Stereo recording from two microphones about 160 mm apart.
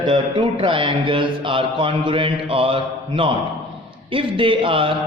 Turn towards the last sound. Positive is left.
turn(degrees=-35)  # may be behind; listen again after turning